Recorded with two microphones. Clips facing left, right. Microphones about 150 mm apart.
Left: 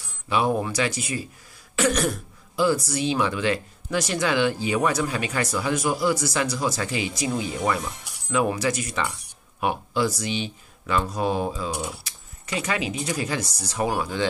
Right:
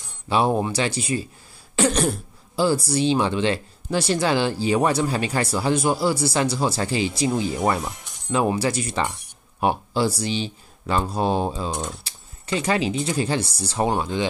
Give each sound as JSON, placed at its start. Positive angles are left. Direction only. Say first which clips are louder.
{"t": 0.3, "sound": "speech", "louder": "right 2 dB", "side_deg": -30}
{"t": 11.7, "sound": "speech", "louder": "right 1 dB", "side_deg": 10}
{"t": 12.0, "sound": "speech", "louder": "right 1 dB", "side_deg": -30}